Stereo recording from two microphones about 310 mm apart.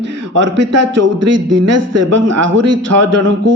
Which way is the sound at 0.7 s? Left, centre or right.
Right.